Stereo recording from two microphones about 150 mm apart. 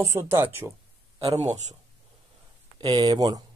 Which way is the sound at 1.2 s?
45° right (ahead or behind).